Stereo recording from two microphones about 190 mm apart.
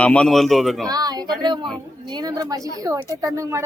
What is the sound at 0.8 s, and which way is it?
Speech, 20° right (ahead or behind).